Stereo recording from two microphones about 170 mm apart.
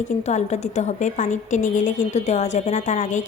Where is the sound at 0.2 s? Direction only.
40° left (ahead or behind).